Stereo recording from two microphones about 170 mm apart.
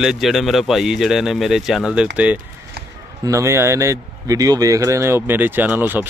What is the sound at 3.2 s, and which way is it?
Speech, 15° right (ahead or behind).